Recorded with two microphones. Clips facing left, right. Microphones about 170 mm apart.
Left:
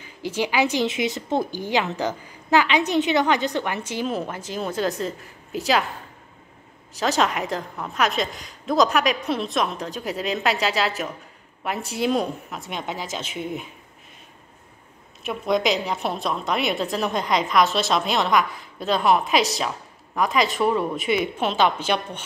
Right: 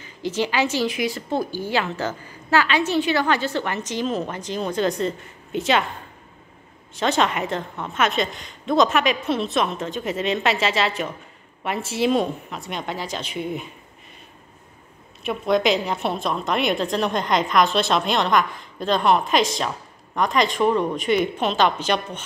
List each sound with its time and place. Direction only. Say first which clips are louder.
0.0 s a woman's voice: right 1 dB; 10° left (ahead or behind)
7.0 s a woman's voice: right 1 dB; centre (ahead or behind)
15.2 s a woman's voice: right 2 dB; centre (ahead or behind)